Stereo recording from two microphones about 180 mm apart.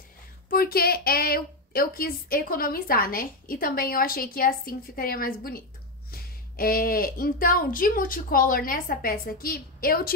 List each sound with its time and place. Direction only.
0.5 s a woman's voice: 55° left (ahead or behind)